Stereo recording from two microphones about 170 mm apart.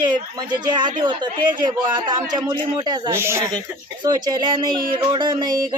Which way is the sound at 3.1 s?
15° right (ahead or behind).